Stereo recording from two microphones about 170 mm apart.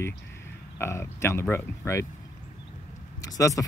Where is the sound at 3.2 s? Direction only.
20° left (ahead or behind).